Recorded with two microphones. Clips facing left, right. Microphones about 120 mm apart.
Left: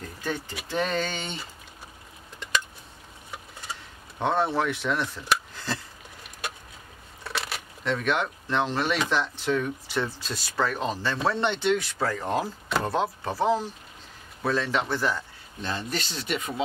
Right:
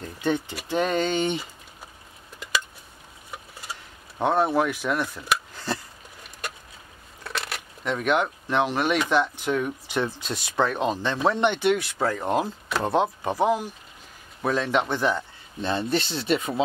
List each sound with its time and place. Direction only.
0.6 s speech: 10° right (ahead or behind)
4.2 s speech: 15° right (ahead or behind)
7.2 s a sound: centre (ahead or behind)
7.8 s speech: 10° right (ahead or behind); by 16.6 s 30° right (ahead or behind)